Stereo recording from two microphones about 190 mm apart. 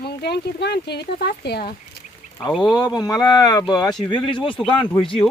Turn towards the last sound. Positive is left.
turn(degrees=25)  # may be behind; listen again after turning